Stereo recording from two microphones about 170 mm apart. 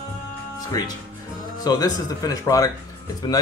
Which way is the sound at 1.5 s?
25° left (ahead or behind).